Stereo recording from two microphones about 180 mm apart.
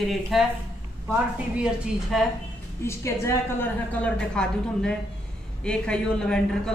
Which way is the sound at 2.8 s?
15° left (ahead or behind).